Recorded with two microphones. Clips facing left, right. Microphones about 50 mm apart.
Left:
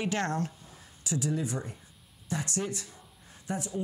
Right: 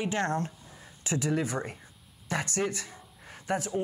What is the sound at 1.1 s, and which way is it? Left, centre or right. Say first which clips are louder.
Speech: right 2 dB; right.